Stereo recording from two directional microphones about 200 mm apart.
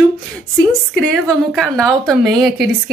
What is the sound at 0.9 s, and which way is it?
A woman's voice, 5° left (ahead or behind).